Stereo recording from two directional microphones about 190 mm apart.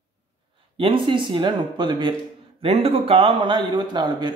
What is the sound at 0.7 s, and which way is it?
Speech, 25° right (ahead or behind).